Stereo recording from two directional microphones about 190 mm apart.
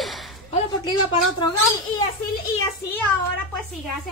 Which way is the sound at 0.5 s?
25° left (ahead or behind).